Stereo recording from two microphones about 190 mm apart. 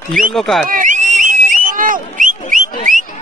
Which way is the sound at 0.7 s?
45° right (ahead or behind).